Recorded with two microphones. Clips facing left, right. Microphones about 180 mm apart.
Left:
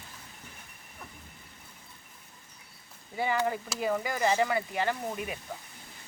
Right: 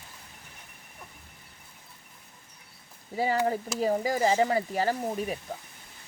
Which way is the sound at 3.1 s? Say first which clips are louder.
Right 3 dB; 35° right (ahead or behind).